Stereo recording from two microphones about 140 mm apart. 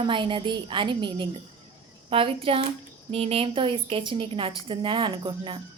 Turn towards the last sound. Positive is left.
turn(degrees=-35)  # may be behind; listen again after turning